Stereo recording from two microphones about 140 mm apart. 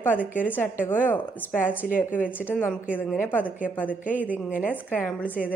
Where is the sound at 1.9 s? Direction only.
75° left (ahead or behind).